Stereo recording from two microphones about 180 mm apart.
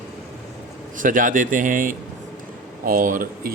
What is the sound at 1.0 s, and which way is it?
Speech, 45° right (ahead or behind).